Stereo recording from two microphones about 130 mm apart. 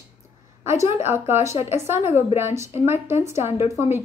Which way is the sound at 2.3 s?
20° right (ahead or behind).